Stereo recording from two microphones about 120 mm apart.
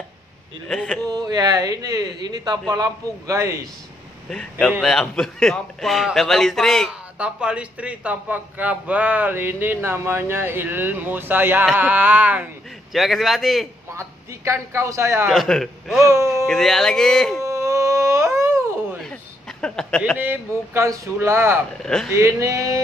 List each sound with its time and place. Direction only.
0.7 s a man's voice: 5° left (ahead or behind)
1.0 s a man's voice: 35° right (ahead or behind)
4.3 s a man's voice: 5° left (ahead or behind)
6.9 s a man's voice: 10° right (ahead or behind)
12.9 s a man's voice: centre (ahead or behind)
13.9 s a man's voice: 25° right (ahead or behind)
15.3 s a man's voice: 5° left (ahead or behind)
16.0 s speech: 25° right (ahead or behind)
16.4 s a man's voice: centre (ahead or behind)
17.4 s a sound: 25° right (ahead or behind)
19.6 s a sound: 5° left (ahead or behind)
20.2 s a man's voice: 20° right (ahead or behind)
21.8 s a man's voice: 5° left (ahead or behind)
22.1 s a man's voice: 25° right (ahead or behind)